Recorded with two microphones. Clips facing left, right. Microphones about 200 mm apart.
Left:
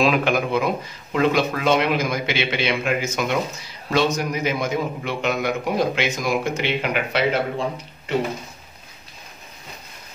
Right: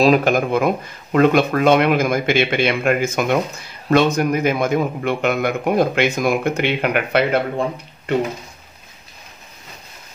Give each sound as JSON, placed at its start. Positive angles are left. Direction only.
{"t": 0.0, "sound": "speech", "side_deg": -40}